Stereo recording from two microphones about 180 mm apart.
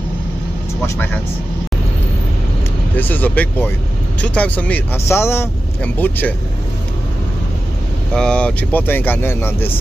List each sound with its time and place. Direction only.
0.8 s speech: 10° left (ahead or behind)
3.0 s speech: 10° left (ahead or behind)
8.1 s speech: 5° left (ahead or behind)